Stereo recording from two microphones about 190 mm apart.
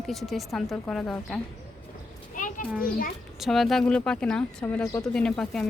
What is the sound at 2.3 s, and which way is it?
Children playing, 45° left (ahead or behind).